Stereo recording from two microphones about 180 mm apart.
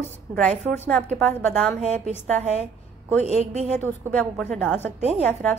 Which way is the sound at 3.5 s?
40° right (ahead or behind).